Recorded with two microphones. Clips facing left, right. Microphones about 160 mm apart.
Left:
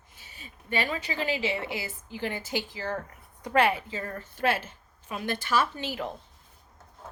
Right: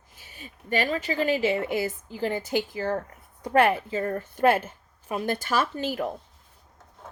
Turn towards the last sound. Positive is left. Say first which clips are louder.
# right 3 dB
turn(degrees=-45)  # may be behind; listen again after turning